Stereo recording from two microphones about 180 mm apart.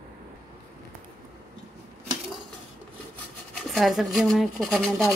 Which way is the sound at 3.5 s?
Centre (ahead or behind).